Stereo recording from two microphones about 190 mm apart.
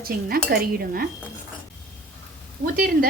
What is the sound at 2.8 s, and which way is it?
Speech, 50° right (ahead or behind).